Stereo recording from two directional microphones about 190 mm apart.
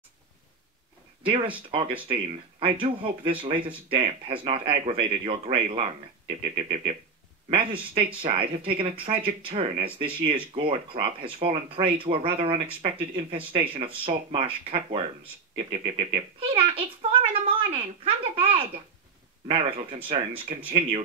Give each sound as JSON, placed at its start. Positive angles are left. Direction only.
{"t": 1.2, "sound": "a child's voice", "side_deg": -30}